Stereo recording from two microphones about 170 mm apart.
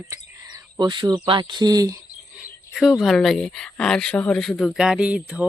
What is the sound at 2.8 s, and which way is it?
Speech, centre (ahead or behind).